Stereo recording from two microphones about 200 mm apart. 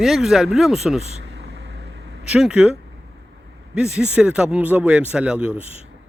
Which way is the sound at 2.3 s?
5° right (ahead or behind).